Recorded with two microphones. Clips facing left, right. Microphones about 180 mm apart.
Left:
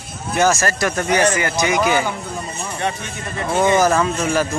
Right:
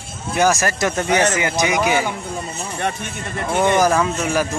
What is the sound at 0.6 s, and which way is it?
Speech, 20° right (ahead or behind).